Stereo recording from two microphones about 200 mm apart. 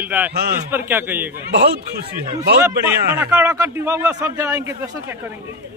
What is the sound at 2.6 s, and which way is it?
A man's voice, 10° right (ahead or behind).